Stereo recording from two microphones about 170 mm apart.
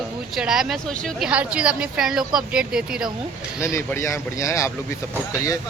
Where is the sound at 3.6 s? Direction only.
15° left (ahead or behind).